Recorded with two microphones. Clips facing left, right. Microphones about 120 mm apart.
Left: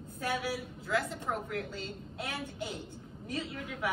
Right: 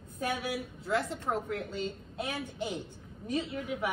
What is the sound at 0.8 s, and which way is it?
A woman's voice, 30° right (ahead or behind).